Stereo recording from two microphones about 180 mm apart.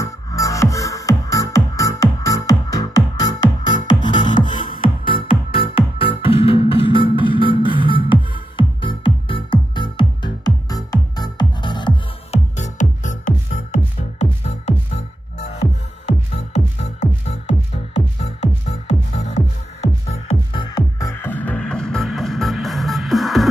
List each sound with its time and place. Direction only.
0.0 s music: 20° left (ahead or behind)
12.5 s music: 40° left (ahead or behind)
20.6 s music: 20° left (ahead or behind); by 23.4 s centre (ahead or behind)